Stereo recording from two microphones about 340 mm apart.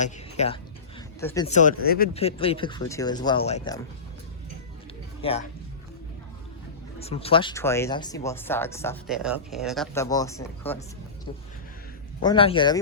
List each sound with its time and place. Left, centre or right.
0.0 s a sound: centre
1.5 s speech: left
5.2 s speech: centre
7.0 s speech: centre
12.2 s speech: centre